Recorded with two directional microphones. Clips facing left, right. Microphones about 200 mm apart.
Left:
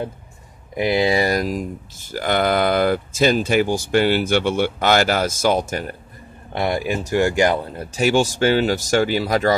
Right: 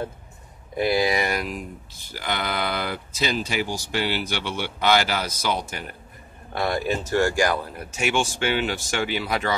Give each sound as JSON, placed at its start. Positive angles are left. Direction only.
{"t": 0.7, "sound": "speech", "side_deg": 20}
{"t": 6.5, "sound": "speech", "side_deg": 20}